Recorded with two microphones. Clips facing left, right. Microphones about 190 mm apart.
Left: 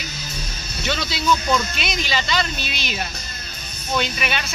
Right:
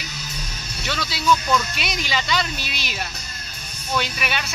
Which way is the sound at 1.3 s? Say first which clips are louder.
Even; 20° left (ahead or behind).